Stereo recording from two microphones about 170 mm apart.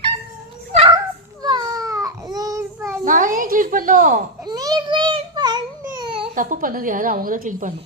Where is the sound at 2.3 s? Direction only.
20° right (ahead or behind).